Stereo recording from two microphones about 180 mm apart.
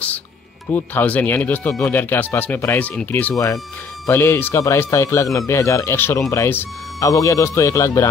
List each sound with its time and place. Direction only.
0.7 s speech: 10° left (ahead or behind)